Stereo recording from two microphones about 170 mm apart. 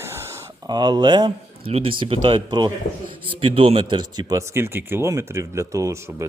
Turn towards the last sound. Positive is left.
turn(degrees=-15)  # may be behind; listen again after turning